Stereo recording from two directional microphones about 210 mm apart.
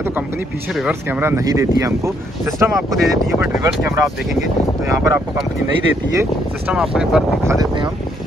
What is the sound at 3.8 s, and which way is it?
Speech, 15° right (ahead or behind).